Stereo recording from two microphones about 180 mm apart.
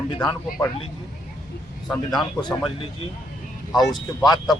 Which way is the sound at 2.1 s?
25° left (ahead or behind).